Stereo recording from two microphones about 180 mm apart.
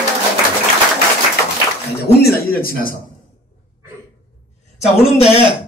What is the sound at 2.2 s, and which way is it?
Speech, 55° left (ahead or behind).